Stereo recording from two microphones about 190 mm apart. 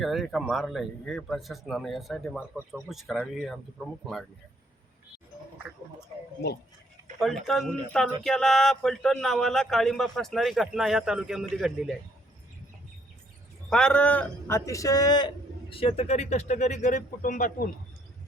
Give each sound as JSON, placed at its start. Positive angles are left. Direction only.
{"t": 0.0, "sound": "speech", "side_deg": 0}
{"t": 7.2, "sound": "speech", "side_deg": 0}
{"t": 13.7, "sound": "a man's voice", "side_deg": 5}